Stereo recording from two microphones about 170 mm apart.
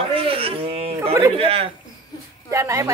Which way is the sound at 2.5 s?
15° right (ahead or behind).